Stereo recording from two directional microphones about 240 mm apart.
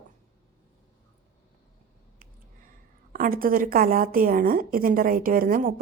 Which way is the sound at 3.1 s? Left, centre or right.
Right.